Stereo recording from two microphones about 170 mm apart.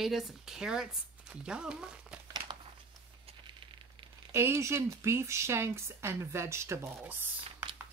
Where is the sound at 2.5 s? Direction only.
30° right (ahead or behind).